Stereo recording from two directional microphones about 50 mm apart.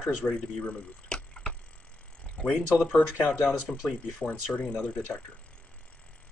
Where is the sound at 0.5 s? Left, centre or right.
Left.